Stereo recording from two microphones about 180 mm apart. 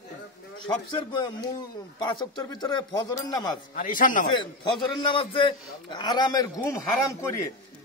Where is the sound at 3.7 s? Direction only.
50° left (ahead or behind).